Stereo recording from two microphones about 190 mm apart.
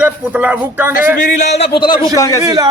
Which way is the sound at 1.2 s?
35° left (ahead or behind).